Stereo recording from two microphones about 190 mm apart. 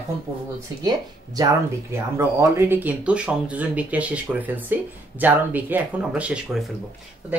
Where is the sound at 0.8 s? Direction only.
20° right (ahead or behind).